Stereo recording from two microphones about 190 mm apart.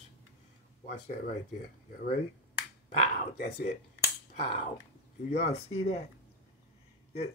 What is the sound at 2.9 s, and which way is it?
Speech, 35° left (ahead or behind).